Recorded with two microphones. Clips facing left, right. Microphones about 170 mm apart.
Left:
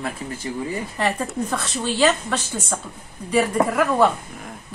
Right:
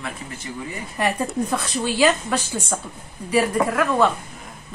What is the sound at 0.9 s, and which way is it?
A woman's voice, 10° right (ahead or behind).